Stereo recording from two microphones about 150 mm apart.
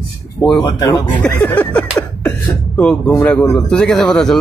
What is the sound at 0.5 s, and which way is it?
Speech, 25° left (ahead or behind).